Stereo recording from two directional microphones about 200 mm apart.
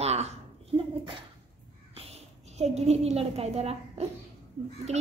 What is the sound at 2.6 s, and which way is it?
A child's voice, 35° right (ahead or behind).